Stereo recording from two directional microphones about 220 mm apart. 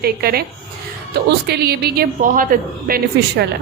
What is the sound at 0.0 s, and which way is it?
A woman's voice, 45° right (ahead or behind).